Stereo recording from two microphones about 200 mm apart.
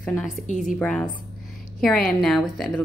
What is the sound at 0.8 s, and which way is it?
A woman's voice, 5° left (ahead or behind).